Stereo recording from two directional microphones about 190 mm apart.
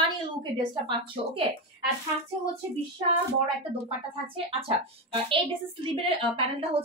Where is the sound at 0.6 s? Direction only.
25° right (ahead or behind).